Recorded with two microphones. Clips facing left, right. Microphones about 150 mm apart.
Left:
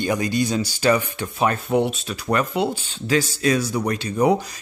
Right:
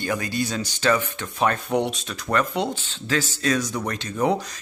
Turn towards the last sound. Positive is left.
turn(degrees=10)  # may be behind; listen again after turning